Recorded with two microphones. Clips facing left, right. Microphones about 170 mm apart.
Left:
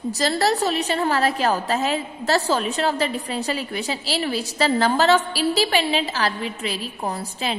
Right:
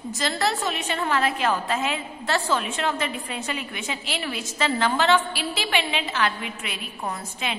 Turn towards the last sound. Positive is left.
turn(degrees=35)  # may be behind; listen again after turning